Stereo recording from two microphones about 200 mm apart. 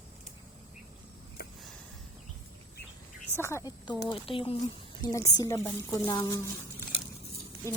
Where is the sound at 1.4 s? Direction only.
50° left (ahead or behind).